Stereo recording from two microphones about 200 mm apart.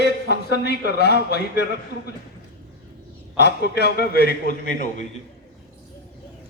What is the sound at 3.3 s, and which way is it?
A man's voice, 55° left (ahead or behind).